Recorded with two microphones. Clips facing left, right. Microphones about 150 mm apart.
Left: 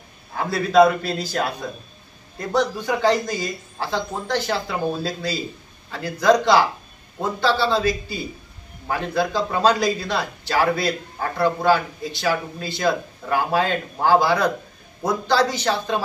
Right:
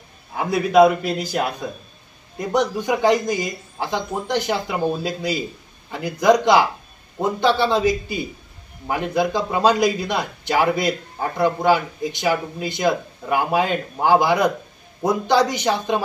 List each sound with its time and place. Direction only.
0.3 s speech: 15° right (ahead or behind)